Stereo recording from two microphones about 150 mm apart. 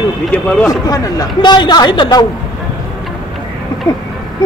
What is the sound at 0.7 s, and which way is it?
Speech, 25° left (ahead or behind).